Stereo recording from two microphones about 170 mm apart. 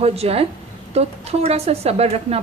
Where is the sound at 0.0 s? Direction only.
35° right (ahead or behind).